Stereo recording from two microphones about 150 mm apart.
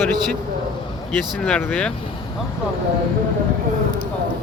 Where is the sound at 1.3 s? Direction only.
5° left (ahead or behind).